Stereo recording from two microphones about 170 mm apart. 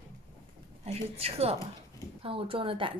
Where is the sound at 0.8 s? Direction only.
35° right (ahead or behind).